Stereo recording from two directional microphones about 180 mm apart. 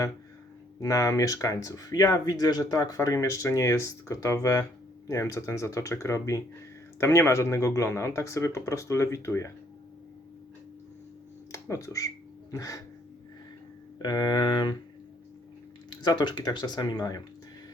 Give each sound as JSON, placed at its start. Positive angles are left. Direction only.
{"t": 0.8, "sound": "speech", "side_deg": 15}
{"t": 11.5, "sound": "a sound", "side_deg": 15}
{"t": 14.0, "sound": "speech", "side_deg": 20}
{"t": 15.9, "sound": "speech", "side_deg": 25}